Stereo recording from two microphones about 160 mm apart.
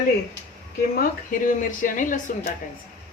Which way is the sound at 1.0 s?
55° left (ahead or behind).